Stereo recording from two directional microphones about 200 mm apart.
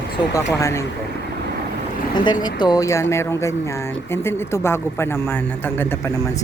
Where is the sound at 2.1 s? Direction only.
20° left (ahead or behind).